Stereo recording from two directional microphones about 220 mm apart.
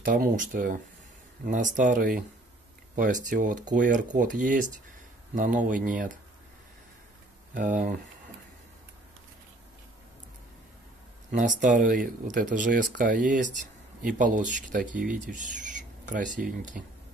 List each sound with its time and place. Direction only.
0.0 s speech: 40° right (ahead or behind)
7.5 s speech: 35° right (ahead or behind)
11.3 s speech: 35° right (ahead or behind)